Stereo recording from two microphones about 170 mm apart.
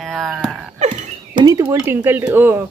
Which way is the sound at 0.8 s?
45° right (ahead or behind).